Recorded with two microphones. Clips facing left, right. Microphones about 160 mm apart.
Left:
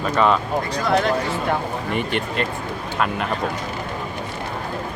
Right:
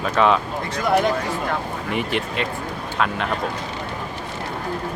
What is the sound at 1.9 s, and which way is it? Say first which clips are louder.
Speech: right 1 dB; centre (ahead or behind).